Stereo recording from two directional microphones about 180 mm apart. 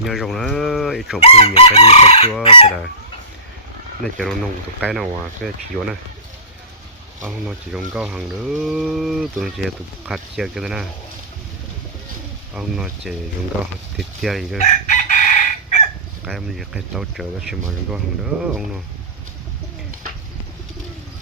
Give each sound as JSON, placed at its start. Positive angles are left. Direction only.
{"t": 0.0, "sound": "speech", "side_deg": 0}
{"t": 1.2, "sound": "chicken", "side_deg": 35}
{"t": 4.8, "sound": "speech", "side_deg": 0}
{"t": 7.2, "sound": "speech", "side_deg": -5}
{"t": 12.5, "sound": "speech", "side_deg": -5}
{"t": 14.6, "sound": "chicken", "side_deg": 45}
{"t": 16.2, "sound": "speech", "side_deg": 0}